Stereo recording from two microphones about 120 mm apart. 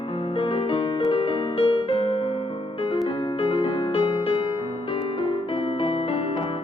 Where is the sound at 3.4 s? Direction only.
40° left (ahead or behind).